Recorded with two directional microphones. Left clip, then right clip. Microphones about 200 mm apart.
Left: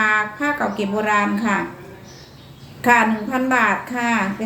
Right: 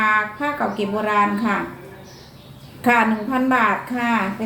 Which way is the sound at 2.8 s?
20° left (ahead or behind).